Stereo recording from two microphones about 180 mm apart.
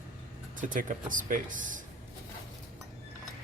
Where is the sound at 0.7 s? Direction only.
45° right (ahead or behind).